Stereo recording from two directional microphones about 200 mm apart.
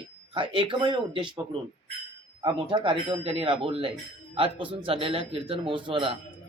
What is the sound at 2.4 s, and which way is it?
Speech, 25° right (ahead or behind).